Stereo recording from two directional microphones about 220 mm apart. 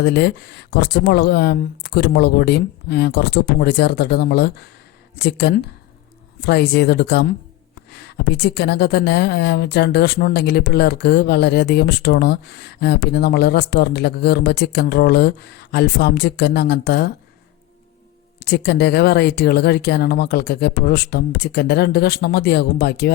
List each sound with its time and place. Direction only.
0.0 s a woman's voice: 50° left (ahead or behind)
18.3 s a woman's voice: 50° left (ahead or behind)